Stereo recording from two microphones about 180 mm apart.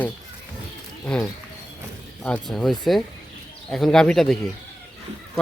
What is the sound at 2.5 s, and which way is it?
Speech, centre (ahead or behind).